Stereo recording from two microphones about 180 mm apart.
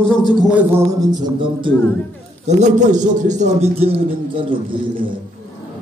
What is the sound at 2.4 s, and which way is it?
A man's voice, 40° right (ahead or behind).